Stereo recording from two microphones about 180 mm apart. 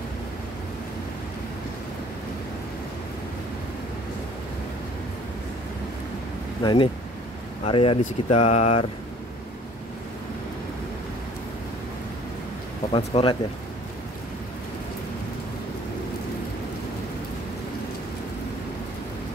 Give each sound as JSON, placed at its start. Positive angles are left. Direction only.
{"t": 6.6, "sound": "speech", "side_deg": 25}
{"t": 12.9, "sound": "speech", "side_deg": 30}